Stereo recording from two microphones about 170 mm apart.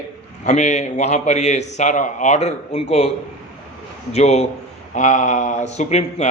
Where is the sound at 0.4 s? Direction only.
45° left (ahead or behind).